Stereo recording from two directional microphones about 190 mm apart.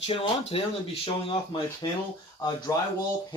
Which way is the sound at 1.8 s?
20° left (ahead or behind).